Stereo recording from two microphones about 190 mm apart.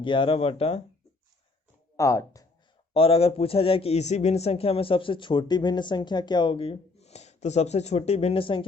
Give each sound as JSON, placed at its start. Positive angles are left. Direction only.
{"t": 0.0, "sound": "a man's voice", "side_deg": 25}
{"t": 2.0, "sound": "speech", "side_deg": 15}
{"t": 2.9, "sound": "a man's voice", "side_deg": 30}